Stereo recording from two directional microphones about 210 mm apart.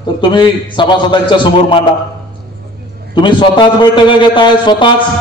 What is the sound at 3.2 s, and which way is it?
A man's voice, 20° left (ahead or behind).